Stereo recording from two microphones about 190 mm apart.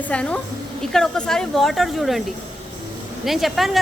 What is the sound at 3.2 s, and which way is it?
Speech, centre (ahead or behind).